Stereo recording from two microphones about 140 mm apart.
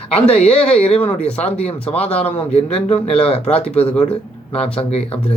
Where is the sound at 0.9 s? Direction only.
50° left (ahead or behind).